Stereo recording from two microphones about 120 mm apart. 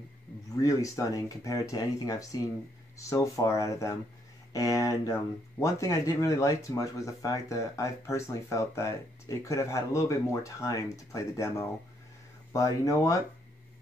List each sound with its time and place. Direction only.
0.6 s speech: 30° left (ahead or behind)